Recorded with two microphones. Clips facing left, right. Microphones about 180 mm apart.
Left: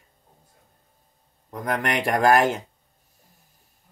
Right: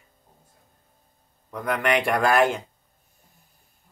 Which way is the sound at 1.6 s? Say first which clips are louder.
Right 2 dB; 40° left (ahead or behind).